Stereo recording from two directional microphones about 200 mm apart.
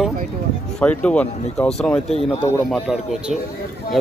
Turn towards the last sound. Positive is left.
turn(degrees=0)  # may be behind; listen again after turning